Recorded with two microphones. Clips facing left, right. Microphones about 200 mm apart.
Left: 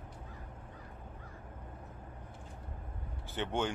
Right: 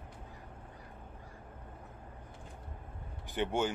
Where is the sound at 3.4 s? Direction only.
10° right (ahead or behind).